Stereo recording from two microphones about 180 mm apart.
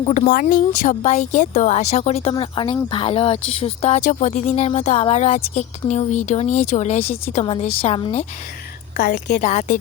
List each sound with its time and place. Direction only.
0.0 s speech: 35° left (ahead or behind)
0.3 s speech: 50° left (ahead or behind); by 8.2 s 30° left (ahead or behind)
9.0 s a woman's voice: 65° left (ahead or behind)
9.4 s speech: 40° left (ahead or behind)